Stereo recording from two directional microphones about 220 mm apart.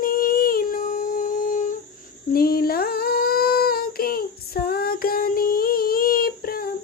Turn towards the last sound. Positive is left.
turn(degrees=40)  # may be behind; listen again after turning